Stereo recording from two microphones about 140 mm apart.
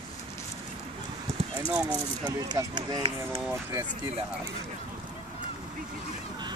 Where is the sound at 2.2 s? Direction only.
30° right (ahead or behind).